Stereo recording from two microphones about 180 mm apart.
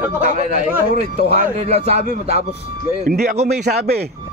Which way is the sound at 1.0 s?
40° right (ahead or behind).